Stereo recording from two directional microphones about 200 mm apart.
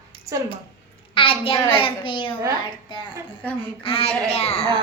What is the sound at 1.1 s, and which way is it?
A child's voice, 25° left (ahead or behind).